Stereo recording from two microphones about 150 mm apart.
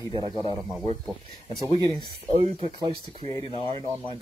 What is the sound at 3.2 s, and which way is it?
Speech, 25° left (ahead or behind).